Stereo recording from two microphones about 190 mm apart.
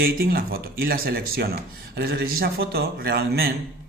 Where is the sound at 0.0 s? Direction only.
55° right (ahead or behind).